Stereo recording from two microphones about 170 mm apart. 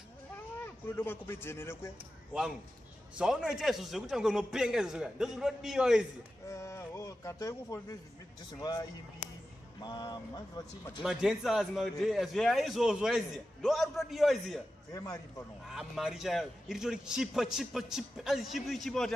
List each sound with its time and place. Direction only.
0.9 s speech: 15° left (ahead or behind)
3.2 s a man's voice: 5° right (ahead or behind)
6.5 s speech: 15° left (ahead or behind)
11.0 s a man's voice: 5° right (ahead or behind)
14.9 s speech: 20° left (ahead or behind)
15.6 s a man's voice: centre (ahead or behind)